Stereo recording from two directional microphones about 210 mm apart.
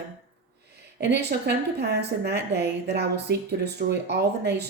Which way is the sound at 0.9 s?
50° right (ahead or behind).